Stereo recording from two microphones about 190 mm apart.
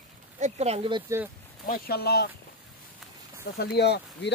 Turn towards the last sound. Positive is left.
turn(degrees=60)  # may be behind; listen again after turning